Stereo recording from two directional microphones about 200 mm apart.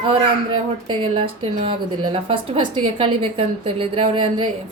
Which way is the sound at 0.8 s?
25° right (ahead or behind).